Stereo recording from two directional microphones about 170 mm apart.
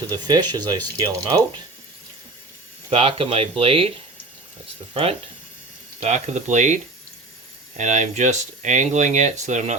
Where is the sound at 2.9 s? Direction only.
35° right (ahead or behind).